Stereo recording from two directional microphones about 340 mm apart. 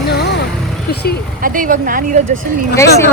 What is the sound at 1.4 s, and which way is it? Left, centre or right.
Speech, right.